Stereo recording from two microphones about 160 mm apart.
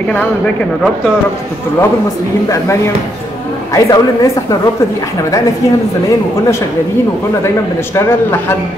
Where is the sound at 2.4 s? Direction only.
15° left (ahead or behind).